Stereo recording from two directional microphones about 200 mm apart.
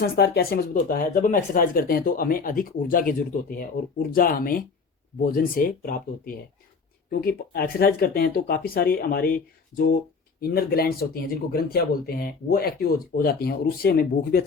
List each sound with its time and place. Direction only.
0.0 s speech: 50° left (ahead or behind)